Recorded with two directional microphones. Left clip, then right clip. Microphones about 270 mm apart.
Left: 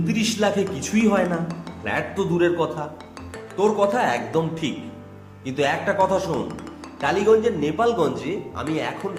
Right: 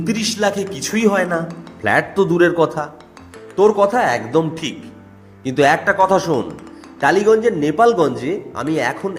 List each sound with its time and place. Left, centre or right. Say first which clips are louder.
0.0 s a man's voice: right 4 dB; right